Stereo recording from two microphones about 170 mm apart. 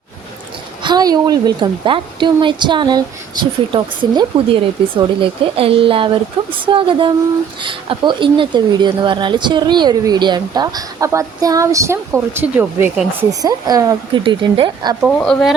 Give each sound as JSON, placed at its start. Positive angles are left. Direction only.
{"t": 0.8, "sound": "speech", "side_deg": -25}
{"t": 15.0, "sound": "speech", "side_deg": 5}